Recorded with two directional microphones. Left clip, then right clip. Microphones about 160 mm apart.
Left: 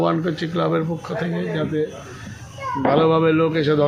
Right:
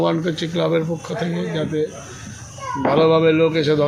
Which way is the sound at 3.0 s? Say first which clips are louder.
Right 3 dB; 10° left (ahead or behind).